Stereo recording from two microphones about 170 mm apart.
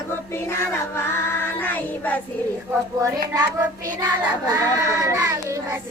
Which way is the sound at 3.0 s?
15° right (ahead or behind).